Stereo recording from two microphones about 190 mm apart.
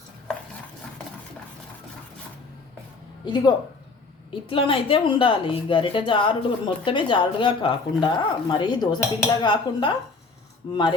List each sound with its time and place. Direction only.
3.2 s a woman's voice: 20° left (ahead or behind)